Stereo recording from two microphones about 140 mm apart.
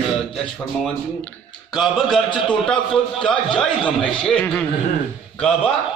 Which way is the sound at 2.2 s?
35° left (ahead or behind).